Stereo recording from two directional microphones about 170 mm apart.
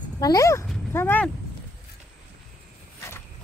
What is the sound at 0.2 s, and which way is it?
Speech, 20° left (ahead or behind).